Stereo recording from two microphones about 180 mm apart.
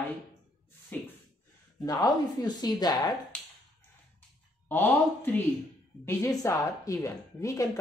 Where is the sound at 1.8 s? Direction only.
20° left (ahead or behind).